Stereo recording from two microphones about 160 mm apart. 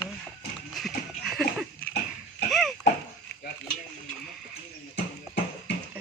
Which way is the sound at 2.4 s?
Centre (ahead or behind).